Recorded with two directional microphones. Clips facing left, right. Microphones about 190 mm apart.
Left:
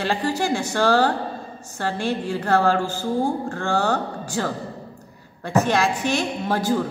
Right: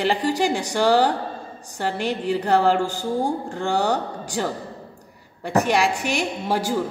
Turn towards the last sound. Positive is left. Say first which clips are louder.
# left 1 dB
turn(degrees=-10)  # may be behind; listen again after turning